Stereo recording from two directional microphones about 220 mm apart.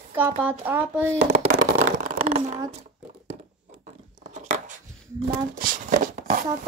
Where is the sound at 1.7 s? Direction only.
30° right (ahead or behind).